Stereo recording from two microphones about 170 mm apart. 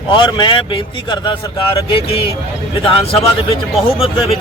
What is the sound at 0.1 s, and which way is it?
Speech, 25° left (ahead or behind).